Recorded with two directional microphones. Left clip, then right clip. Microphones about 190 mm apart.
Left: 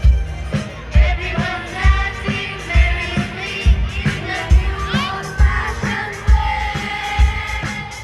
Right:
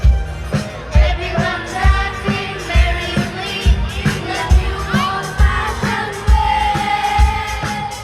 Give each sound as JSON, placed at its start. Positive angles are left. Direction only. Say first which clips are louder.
{"t": 0.5, "sound": "music", "louder": "right 3 dB", "side_deg": -45}